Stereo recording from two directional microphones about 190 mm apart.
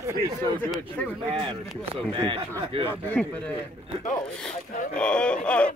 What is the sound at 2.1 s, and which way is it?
Speech, 25° right (ahead or behind).